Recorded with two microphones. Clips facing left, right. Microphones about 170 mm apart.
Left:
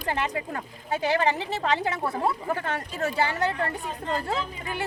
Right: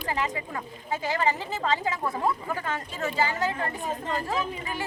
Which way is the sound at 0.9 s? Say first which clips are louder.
Left 3 dB; 70° left (ahead or behind).